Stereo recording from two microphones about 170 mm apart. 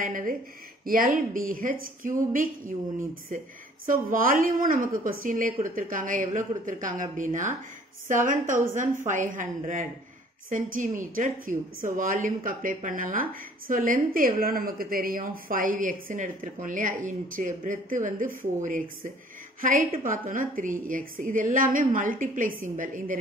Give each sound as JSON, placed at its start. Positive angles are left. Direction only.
{"t": 0.0, "sound": "a woman's voice", "side_deg": -55}
{"t": 3.8, "sound": "a woman's voice", "side_deg": -55}